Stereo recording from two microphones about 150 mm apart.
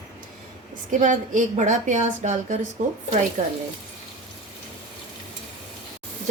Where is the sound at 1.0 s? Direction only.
55° right (ahead or behind).